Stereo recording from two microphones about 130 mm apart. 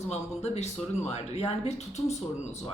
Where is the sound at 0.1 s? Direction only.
55° left (ahead or behind).